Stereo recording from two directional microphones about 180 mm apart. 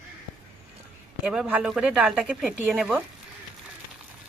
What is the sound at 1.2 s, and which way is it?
A woman's voice, 5° right (ahead or behind).